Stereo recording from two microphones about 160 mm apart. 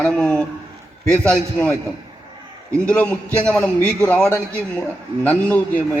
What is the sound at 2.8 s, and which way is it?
A man's voice, 10° left (ahead or behind).